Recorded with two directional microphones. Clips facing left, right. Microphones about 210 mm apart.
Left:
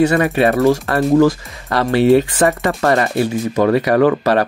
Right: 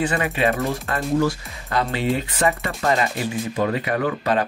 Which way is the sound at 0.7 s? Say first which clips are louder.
Left 10 dB; 85° left.